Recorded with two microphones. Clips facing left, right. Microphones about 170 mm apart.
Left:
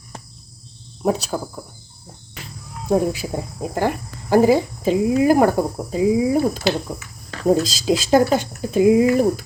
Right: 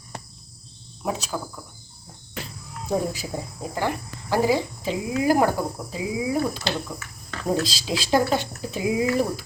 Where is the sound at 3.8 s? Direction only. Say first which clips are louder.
Left 5 dB; 50° left (ahead or behind).